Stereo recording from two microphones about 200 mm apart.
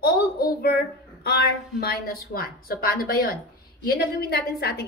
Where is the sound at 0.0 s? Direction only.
50° left (ahead or behind).